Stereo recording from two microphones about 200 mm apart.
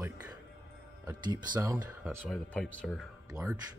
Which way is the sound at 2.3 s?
Centre (ahead or behind).